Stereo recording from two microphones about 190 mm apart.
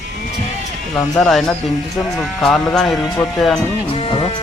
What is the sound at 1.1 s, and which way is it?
Speech, centre (ahead or behind).